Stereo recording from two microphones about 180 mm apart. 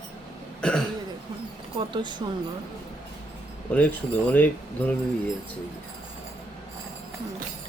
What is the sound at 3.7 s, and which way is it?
Speech, 10° left (ahead or behind).